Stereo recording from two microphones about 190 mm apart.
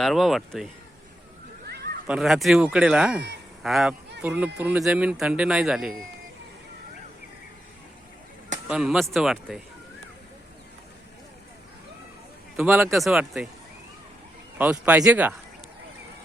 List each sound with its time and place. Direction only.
0.0 s a man's voice: centre (ahead or behind)
1.6 s a sound: 55° right (ahead or behind)
2.0 s a man's voice: centre (ahead or behind)
8.6 s a man's voice: 5° right (ahead or behind)
12.5 s a man's voice: 5° right (ahead or behind)
14.6 s speech: 5° right (ahead or behind)